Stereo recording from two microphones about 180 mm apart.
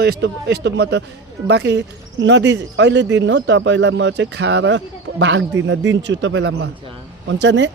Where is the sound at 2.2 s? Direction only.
90° right.